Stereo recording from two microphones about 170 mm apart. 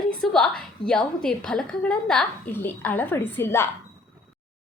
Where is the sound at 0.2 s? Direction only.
5° left (ahead or behind).